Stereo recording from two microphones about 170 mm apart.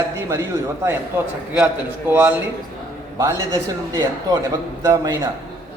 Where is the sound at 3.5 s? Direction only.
25° right (ahead or behind).